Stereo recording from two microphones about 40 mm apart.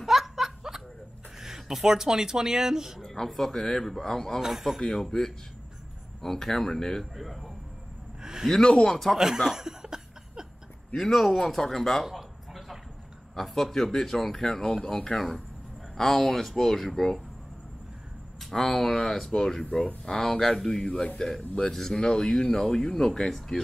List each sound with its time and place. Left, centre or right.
0.0 s snicker: centre
1.4 s speech: centre
3.0 s speech: centre
4.4 s a man's voice: centre
4.7 s speech: centre
8.2 s a sound: centre
8.8 s speech: centre
9.4 s cough: centre
11.0 s speech: centre
12.1 s a sound: centre
13.4 s speech: centre
18.4 s speech: centre